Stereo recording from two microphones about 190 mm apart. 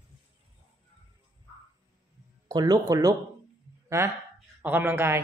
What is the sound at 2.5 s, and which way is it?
Speech, 20° right (ahead or behind).